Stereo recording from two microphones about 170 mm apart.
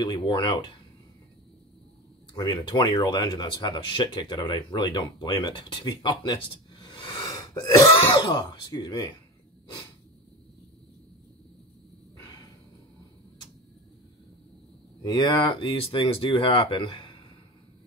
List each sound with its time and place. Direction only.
0.0 s speech: 25° left (ahead or behind)
2.3 s speech: 25° left (ahead or behind)
15.0 s speech: 25° left (ahead or behind)